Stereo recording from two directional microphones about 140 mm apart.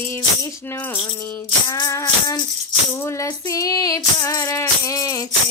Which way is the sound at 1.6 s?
25° left (ahead or behind).